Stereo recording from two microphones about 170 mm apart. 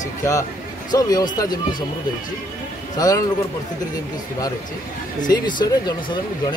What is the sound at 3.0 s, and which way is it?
Speech, 20° left (ahead or behind).